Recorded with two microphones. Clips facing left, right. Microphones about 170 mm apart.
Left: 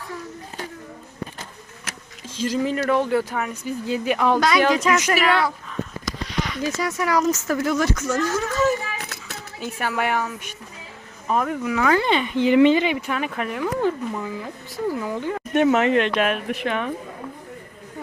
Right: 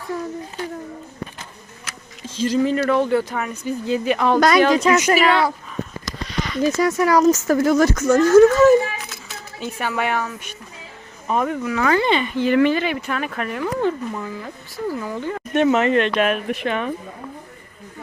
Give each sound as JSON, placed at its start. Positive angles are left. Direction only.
{"t": 2.3, "sound": "speech", "side_deg": 10}
{"t": 4.4, "sound": "speech", "side_deg": -50}
{"t": 4.8, "sound": "a woman's voice", "side_deg": -35}
{"t": 6.3, "sound": "a sound", "side_deg": 10}
{"t": 6.6, "sound": "speech", "side_deg": -45}
{"t": 9.6, "sound": "speech", "side_deg": 5}
{"t": 12.3, "sound": "speech", "side_deg": 15}
{"t": 16.3, "sound": "speech", "side_deg": -5}